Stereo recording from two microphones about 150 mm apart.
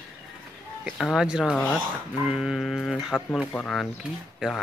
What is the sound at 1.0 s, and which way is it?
Speech, centre (ahead or behind).